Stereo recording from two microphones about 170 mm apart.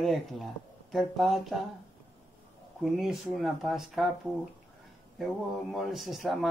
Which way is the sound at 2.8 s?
Centre (ahead or behind).